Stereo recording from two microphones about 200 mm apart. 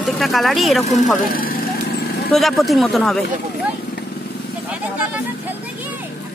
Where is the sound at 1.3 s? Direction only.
45° left (ahead or behind).